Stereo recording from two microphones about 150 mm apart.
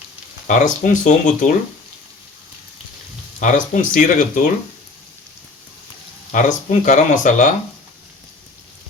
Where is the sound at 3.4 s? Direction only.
60° left (ahead or behind).